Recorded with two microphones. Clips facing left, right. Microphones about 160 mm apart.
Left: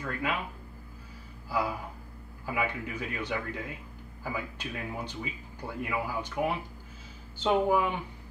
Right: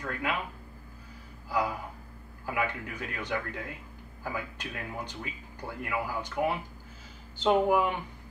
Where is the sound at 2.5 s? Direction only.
5° left (ahead or behind).